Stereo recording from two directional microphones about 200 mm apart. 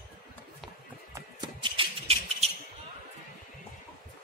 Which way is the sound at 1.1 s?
20° right (ahead or behind).